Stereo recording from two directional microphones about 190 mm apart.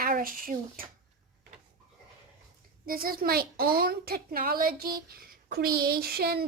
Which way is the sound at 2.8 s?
50° right (ahead or behind).